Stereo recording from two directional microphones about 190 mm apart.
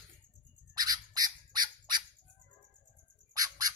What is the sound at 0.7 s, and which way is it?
Bird, 20° right (ahead or behind).